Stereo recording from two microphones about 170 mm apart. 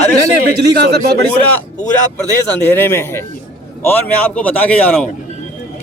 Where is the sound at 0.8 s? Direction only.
75° right (ahead or behind).